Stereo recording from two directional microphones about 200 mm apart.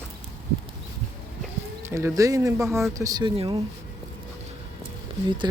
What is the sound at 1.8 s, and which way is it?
Speech, 15° right (ahead or behind).